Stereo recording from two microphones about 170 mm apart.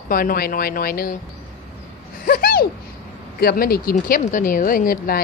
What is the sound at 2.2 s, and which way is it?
A woman's voice, 60° left (ahead or behind).